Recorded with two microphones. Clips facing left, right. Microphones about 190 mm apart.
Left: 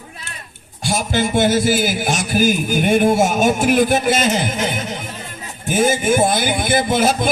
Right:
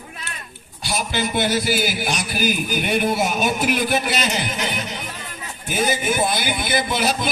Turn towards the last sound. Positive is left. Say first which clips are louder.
# left 5 dB
turn(degrees=50)  # may be behind; listen again after turning